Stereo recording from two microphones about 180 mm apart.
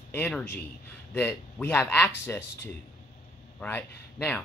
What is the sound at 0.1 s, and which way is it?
Speech, 10° left (ahead or behind).